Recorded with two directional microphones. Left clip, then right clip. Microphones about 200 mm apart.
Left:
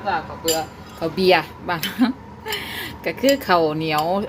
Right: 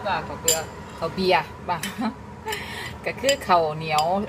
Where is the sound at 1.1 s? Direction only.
40° left (ahead or behind).